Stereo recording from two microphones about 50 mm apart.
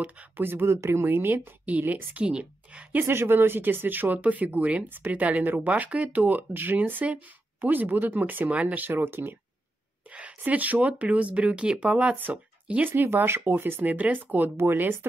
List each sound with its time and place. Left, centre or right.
0.4 s speech: right
0.7 s speech: right
1.7 s speech: right
2.1 s speech: right
3.1 s speech: right
8.5 s speech: right
8.8 s speech: right
10.4 s speech: right
12.2 s speech: right
13.1 s speech: right
13.8 s speech: right
14.6 s speech: right